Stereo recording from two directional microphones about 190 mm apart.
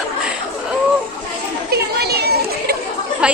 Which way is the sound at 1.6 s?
55° right (ahead or behind).